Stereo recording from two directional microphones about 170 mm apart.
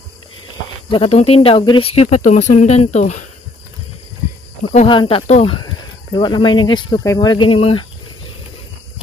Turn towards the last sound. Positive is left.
turn(degrees=30)  # may be behind; listen again after turning